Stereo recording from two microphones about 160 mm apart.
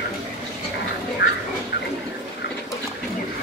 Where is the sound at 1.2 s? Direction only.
90° left.